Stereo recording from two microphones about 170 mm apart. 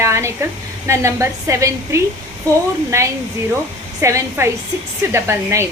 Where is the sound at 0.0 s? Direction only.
15° right (ahead or behind).